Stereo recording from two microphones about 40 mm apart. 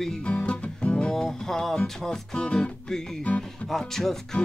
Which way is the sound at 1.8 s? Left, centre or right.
Left.